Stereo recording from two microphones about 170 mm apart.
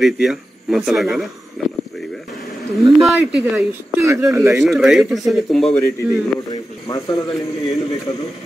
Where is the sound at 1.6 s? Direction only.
Centre (ahead or behind).